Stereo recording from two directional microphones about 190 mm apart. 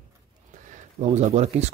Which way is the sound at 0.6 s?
40° right (ahead or behind).